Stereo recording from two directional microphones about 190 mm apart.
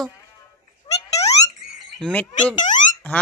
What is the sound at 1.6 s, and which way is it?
Frog, 5° left (ahead or behind).